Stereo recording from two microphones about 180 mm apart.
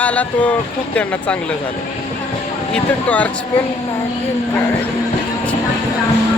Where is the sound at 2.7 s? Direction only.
10° left (ahead or behind).